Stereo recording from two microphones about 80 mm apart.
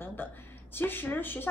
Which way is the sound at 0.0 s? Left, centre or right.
Left.